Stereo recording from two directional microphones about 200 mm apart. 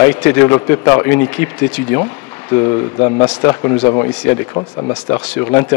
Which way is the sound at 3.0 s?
25° left (ahead or behind).